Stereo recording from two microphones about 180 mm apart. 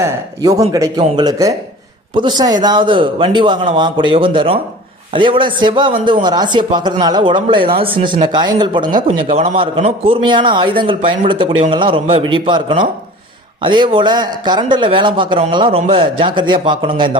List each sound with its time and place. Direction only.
0.0 s speech: 20° right (ahead or behind)